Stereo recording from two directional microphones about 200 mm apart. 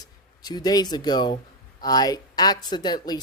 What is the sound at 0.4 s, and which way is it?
A woman's voice, 20° left (ahead or behind).